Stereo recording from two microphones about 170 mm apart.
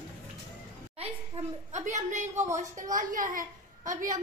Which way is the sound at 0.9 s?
40° right (ahead or behind).